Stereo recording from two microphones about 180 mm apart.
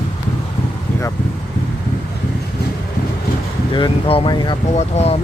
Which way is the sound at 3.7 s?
30° left (ahead or behind).